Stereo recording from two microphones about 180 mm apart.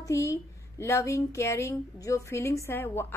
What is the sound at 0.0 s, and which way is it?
A woman's voice, 15° left (ahead or behind).